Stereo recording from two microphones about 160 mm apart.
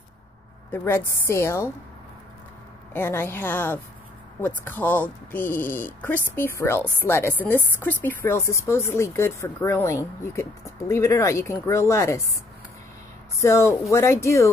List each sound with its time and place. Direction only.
0.7 s a woman's voice: 15° left (ahead or behind)
2.9 s a woman's voice: 15° left (ahead or behind)
13.4 s a woman's voice: 15° left (ahead or behind)